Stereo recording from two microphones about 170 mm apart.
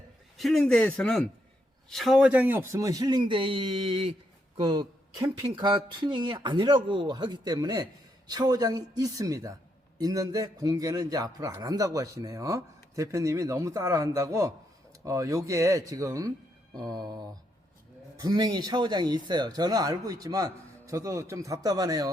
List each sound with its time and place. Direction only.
0.3 s a man's voice: centre (ahead or behind); by 22.1 s 20° right (ahead or behind)